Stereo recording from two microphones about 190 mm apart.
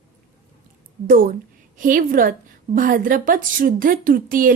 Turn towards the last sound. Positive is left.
turn(degrees=-45)  # may be behind; listen again after turning